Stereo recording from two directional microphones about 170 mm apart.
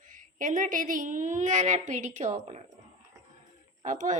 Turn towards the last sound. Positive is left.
turn(degrees=-50)  # may be behind; listen again after turning